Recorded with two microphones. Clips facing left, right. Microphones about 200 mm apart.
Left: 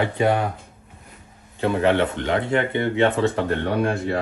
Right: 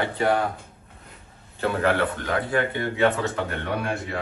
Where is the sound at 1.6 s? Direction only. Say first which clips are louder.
Left 3 dB; 15° left (ahead or behind).